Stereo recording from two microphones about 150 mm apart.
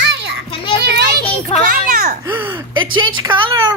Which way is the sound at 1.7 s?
65° right (ahead or behind).